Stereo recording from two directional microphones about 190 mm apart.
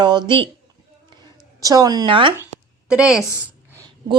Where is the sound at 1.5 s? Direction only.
20° right (ahead or behind).